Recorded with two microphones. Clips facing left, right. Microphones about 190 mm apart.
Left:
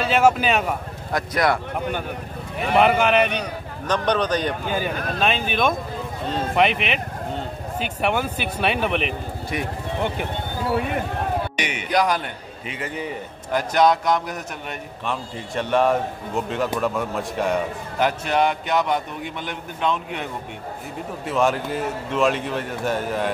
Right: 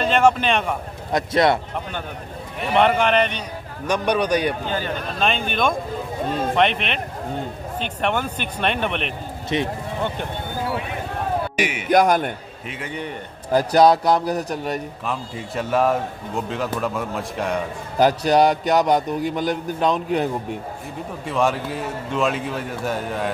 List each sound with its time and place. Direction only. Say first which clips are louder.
0.0 s speech: right 1 dB; 5° left (ahead or behind)
1.1 s speech: right 3 dB; 25° right (ahead or behind)
2.7 s a man's voice: even; 5° left (ahead or behind)
3.8 s a man's voice: right 1 dB; 10° right (ahead or behind)
4.6 s a man's voice: left 1 dB; 15° left (ahead or behind)
9.5 s speech: right 5 dB; 25° right (ahead or behind)
11.5 s speech: right 4 dB; 5° right (ahead or behind)
11.9 s a man's voice: right 5 dB; 50° right (ahead or behind)
12.6 s a man's voice: left 1 dB; centre (ahead or behind)
13.5 s a man's voice: right 4 dB; 35° right (ahead or behind)
15.0 s a man's voice: left 4 dB; 5° right (ahead or behind)
17.9 s a man's voice: right 5 dB; 35° right (ahead or behind)
21.3 s a man's voice: even; centre (ahead or behind)